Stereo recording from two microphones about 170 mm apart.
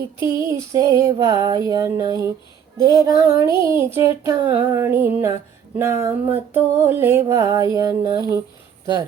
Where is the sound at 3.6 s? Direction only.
15° right (ahead or behind).